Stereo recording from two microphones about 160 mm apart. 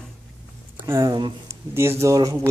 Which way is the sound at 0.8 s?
20° right (ahead or behind).